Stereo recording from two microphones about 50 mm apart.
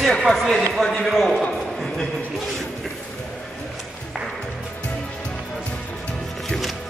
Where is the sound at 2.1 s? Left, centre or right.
Centre.